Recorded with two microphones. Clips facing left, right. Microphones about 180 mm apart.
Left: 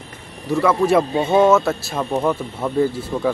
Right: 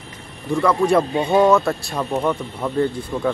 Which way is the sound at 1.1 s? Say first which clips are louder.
Left 1 dB; 25° left (ahead or behind).